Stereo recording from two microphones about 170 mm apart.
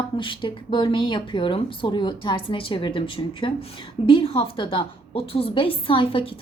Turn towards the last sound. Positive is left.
turn(degrees=30)  # may be behind; listen again after turning